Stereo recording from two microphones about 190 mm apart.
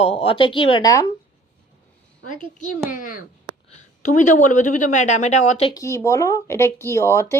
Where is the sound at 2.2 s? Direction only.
40° left (ahead or behind).